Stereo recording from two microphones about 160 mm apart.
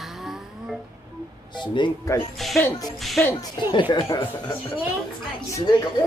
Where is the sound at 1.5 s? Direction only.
30° left (ahead or behind).